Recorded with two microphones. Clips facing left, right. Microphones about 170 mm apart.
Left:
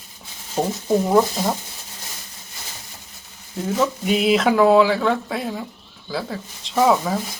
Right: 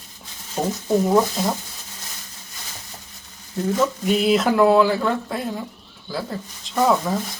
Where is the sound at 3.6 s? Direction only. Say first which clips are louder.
Right 1 dB; centre (ahead or behind).